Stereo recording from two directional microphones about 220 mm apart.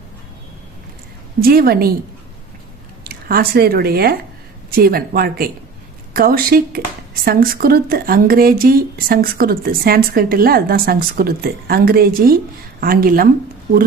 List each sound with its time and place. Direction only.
1.4 s speech: 45° right (ahead or behind)
3.0 s speech: 40° right (ahead or behind)